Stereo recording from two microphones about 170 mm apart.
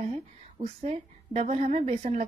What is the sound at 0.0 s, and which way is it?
A woman's voice, 40° right (ahead or behind).